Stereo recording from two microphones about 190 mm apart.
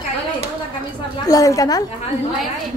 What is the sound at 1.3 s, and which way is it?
Speech, 15° left (ahead or behind).